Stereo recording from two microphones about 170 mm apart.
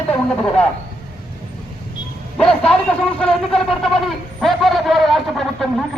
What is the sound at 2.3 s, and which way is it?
A man's voice, 5° left (ahead or behind).